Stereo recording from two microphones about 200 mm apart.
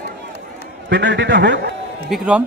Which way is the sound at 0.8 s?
60° right (ahead or behind).